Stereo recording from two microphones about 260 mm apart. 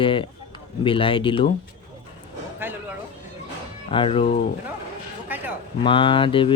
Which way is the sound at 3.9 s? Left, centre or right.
Left.